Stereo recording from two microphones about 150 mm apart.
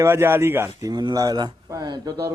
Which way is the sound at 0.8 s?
25° right (ahead or behind).